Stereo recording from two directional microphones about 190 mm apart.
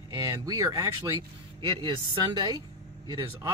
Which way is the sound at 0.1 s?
20° right (ahead or behind).